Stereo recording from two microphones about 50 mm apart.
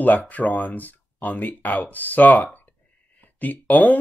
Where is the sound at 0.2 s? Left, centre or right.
Left.